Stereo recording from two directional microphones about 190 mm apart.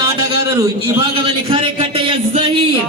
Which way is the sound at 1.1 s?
30° right (ahead or behind).